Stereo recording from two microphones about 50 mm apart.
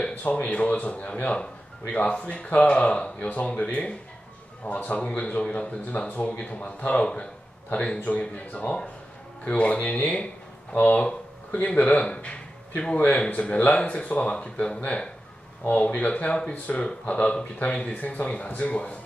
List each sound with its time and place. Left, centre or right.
0.1 s speech: left